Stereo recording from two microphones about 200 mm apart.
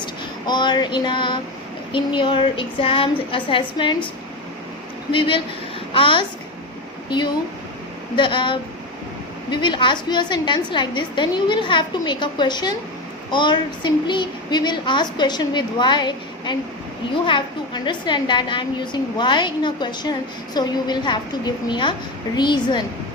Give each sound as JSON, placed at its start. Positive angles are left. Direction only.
{"t": 0.0, "sound": "a sound", "side_deg": 20}
{"t": 1.9, "sound": "a woman's voice", "side_deg": 25}
{"t": 5.1, "sound": "a woman's voice", "side_deg": 25}
{"t": 8.1, "sound": "a woman's voice", "side_deg": 25}
{"t": 17.8, "sound": "a woman's voice", "side_deg": 25}